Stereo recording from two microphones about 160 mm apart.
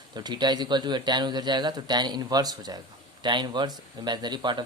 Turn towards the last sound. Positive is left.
turn(degrees=-30)  # may be behind; listen again after turning